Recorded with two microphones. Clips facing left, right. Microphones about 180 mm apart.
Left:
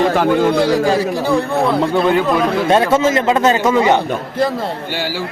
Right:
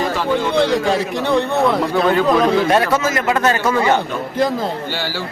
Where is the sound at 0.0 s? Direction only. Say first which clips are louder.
Left 5 dB; 50° left (ahead or behind).